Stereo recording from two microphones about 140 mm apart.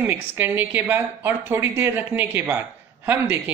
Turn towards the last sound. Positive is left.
turn(degrees=-15)  # may be behind; listen again after turning